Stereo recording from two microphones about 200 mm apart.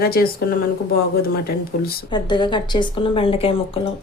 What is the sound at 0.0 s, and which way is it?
A woman's voice, 50° left (ahead or behind).